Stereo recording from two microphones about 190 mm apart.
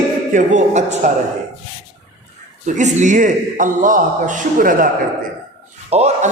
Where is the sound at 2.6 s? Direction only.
40° right (ahead or behind).